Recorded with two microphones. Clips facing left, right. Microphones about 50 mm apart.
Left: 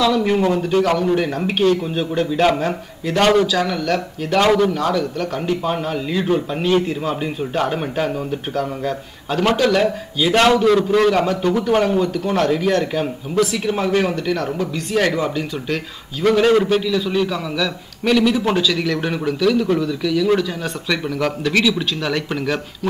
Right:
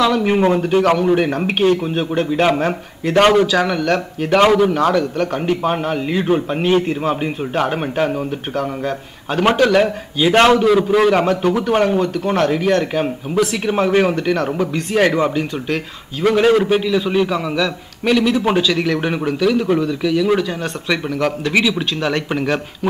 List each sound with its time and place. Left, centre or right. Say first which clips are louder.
0.0 s speech: right 2 dB; right
10.6 s a man's voice: right 1 dB; centre